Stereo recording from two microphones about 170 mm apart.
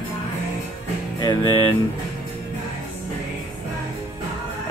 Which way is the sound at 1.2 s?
25° left (ahead or behind).